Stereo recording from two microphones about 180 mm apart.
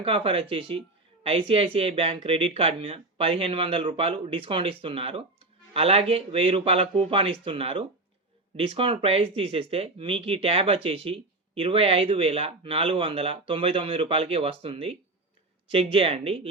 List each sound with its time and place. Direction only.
0.0 s speech: 30° right (ahead or behind)